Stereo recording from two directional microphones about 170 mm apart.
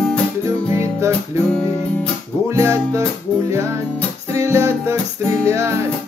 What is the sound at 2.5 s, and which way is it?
Music, 15° right (ahead or behind).